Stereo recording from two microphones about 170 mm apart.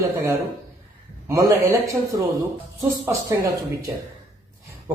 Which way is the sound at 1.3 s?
15° right (ahead or behind).